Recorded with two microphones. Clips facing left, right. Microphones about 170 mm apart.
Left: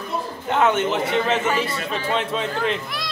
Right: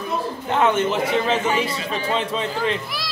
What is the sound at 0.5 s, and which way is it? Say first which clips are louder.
A man's voice: even; centre (ahead or behind).